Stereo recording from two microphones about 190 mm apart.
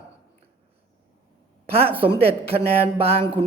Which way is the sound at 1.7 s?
30° right (ahead or behind).